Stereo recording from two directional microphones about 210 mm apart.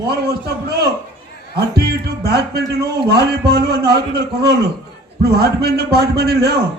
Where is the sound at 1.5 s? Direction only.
50° right (ahead or behind).